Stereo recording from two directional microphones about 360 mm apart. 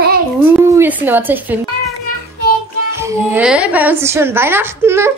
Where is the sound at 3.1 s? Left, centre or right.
Centre.